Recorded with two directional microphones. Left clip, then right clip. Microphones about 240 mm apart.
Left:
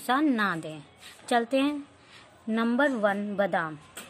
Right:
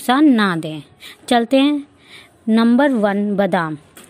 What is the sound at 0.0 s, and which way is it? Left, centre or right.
Speech, right.